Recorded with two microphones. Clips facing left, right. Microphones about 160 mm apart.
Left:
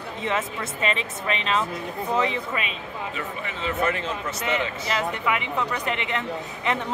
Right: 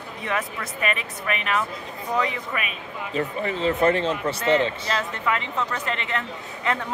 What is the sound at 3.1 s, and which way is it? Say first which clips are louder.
Speech: right 7 dB; 35° right (ahead or behind).